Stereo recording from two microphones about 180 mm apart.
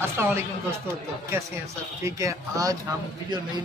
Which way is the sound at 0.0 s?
15° right (ahead or behind).